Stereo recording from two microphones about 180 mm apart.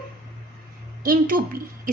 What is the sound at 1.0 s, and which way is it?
Speech, 50° right (ahead or behind).